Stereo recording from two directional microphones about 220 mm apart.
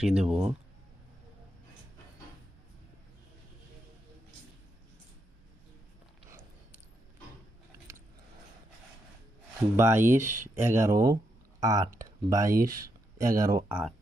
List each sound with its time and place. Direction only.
0.0 s speech: 5° right (ahead or behind)
9.7 s speech: 10° right (ahead or behind)